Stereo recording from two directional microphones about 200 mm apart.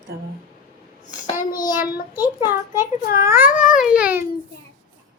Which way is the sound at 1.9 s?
45° left (ahead or behind).